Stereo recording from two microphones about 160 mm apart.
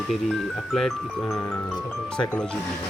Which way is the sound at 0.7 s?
5° left (ahead or behind).